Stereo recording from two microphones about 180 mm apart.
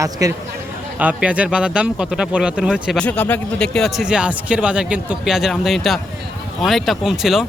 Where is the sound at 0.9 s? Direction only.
5° right (ahead or behind).